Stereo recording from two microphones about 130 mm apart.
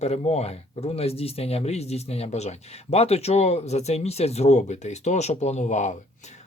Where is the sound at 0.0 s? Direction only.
55° left (ahead or behind).